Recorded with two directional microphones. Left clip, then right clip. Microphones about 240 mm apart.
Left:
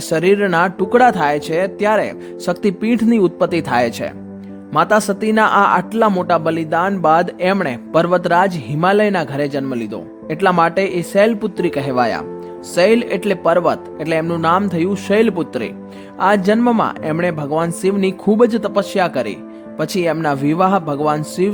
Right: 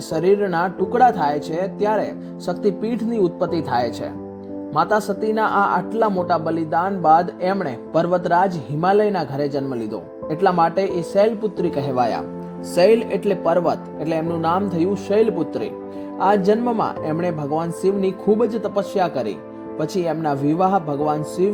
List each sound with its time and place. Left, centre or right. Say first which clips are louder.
0.1 s speech: left 4 dB; left
4.8 s speech: left 5 dB; left